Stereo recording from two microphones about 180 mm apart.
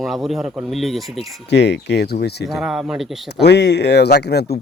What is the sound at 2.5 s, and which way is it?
Speech, centre (ahead or behind).